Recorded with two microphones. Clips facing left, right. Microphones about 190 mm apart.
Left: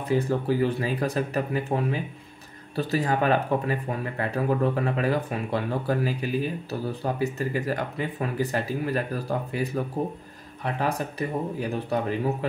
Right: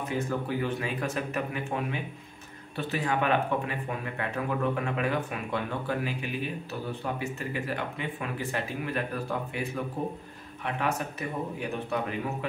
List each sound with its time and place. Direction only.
0.1 s speech: 35° left (ahead or behind)